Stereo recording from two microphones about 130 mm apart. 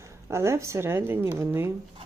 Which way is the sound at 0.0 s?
20° right (ahead or behind).